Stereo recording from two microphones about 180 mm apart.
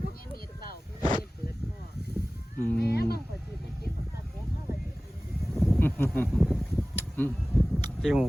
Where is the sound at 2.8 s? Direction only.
60° left (ahead or behind).